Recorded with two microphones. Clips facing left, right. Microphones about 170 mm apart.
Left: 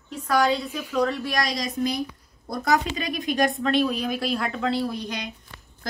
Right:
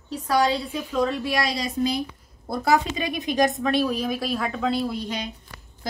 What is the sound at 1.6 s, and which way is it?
Speech, 30° right (ahead or behind).